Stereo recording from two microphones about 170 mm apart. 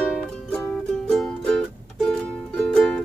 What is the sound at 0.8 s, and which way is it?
Music, 5° left (ahead or behind).